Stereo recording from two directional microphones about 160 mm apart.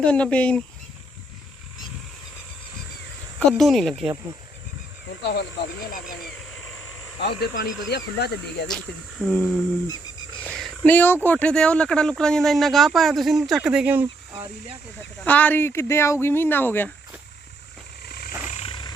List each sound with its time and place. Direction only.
0.0 s speech: 5° left (ahead or behind)
3.3 s speech: centre (ahead or behind)
5.2 s speech: 90° left
7.2 s speech: 90° left
8.7 s speech: centre (ahead or behind)
15.2 s speech: 10° left (ahead or behind)
18.0 s wild animals: 80° left
18.4 s vehicle: 45° left (ahead or behind)
18.7 s vehicle: 30° left (ahead or behind)